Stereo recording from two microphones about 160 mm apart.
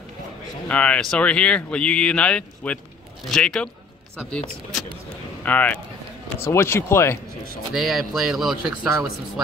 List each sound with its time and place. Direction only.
0.7 s speech: 10° left (ahead or behind)
5.4 s speech: 10° left (ahead or behind)
7.7 s speech: centre (ahead or behind)